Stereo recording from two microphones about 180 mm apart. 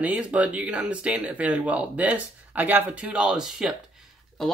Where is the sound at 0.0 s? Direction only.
5° right (ahead or behind).